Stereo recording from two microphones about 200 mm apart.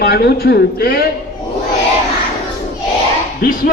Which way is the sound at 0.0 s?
55° left (ahead or behind).